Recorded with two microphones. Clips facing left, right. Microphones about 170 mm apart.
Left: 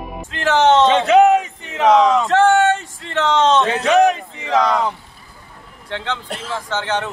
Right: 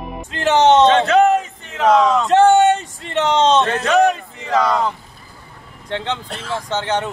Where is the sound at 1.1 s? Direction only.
10° left (ahead or behind).